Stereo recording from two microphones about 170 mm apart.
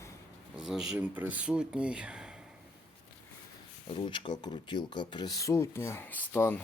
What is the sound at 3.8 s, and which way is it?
Speech, 30° left (ahead or behind).